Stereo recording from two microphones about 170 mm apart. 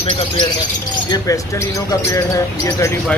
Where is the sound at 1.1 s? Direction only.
20° left (ahead or behind).